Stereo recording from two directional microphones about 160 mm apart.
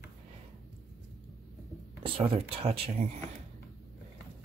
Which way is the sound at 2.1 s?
35° right (ahead or behind).